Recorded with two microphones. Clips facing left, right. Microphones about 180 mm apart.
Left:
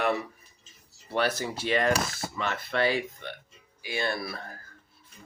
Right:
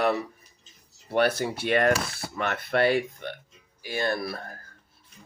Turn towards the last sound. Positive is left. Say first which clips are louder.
# right 4 dB
turn(degrees=-45)  # may be behind; listen again after turning